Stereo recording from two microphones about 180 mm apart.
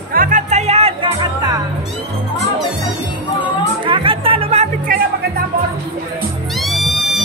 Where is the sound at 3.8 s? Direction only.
30° right (ahead or behind).